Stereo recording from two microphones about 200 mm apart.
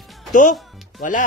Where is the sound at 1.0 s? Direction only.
40° left (ahead or behind).